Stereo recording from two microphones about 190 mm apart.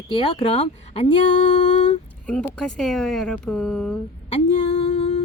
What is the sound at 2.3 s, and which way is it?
Speech, 5° left (ahead or behind).